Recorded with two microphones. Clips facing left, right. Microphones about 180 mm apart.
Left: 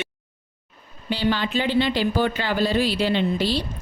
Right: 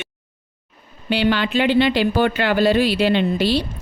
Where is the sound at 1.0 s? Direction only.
70° right (ahead or behind).